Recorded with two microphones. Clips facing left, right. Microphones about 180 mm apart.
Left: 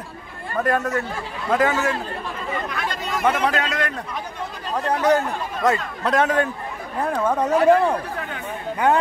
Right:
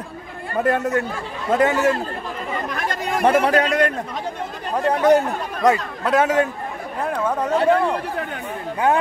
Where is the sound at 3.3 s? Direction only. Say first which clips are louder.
Right 7 dB; 45° right (ahead or behind).